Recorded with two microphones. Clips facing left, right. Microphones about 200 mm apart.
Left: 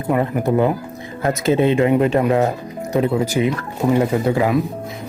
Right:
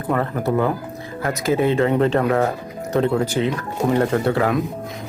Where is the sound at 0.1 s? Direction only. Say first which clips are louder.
Left 3 dB; 15° left (ahead or behind).